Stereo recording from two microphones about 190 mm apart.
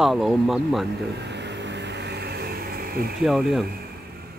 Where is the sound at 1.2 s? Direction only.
65° right (ahead or behind).